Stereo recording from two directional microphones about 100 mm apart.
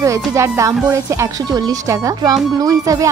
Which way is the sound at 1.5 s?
40° right (ahead or behind).